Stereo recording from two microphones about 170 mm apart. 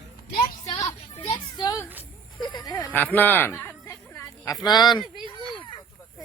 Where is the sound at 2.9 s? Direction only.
10° left (ahead or behind).